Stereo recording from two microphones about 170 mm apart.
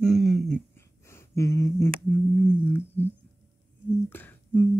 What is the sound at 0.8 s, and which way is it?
Humming, 15° left (ahead or behind).